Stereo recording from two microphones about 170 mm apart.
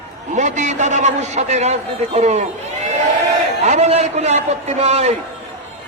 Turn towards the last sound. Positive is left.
turn(degrees=-40)  # may be behind; listen again after turning